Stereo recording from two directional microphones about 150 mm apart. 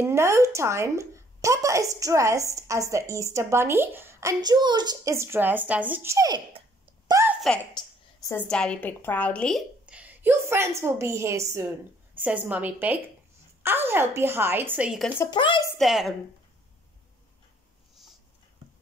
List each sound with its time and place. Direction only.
0.0 s a woman's voice: 20° right (ahead or behind)
7.2 s a sound: 20° right (ahead or behind)
8.5 s a woman's voice: 5° left (ahead or behind)
9.8 s a woman's voice: 10° right (ahead or behind)
12.2 s a woman's voice: 10° right (ahead or behind)
15.3 s a woman's voice: 30° left (ahead or behind)
15.8 s speech: centre (ahead or behind)